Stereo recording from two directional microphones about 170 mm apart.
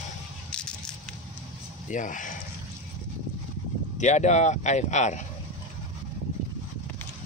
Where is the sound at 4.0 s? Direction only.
45° left (ahead or behind).